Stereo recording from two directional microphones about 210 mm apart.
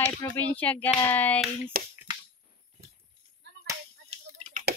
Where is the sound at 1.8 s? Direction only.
45° right (ahead or behind).